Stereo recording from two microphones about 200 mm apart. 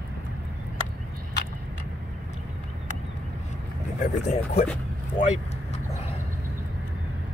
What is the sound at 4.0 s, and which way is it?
Speech, 30° left (ahead or behind).